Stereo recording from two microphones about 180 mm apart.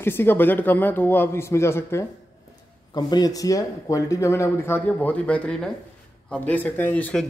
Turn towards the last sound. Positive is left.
turn(degrees=10)  # may be behind; listen again after turning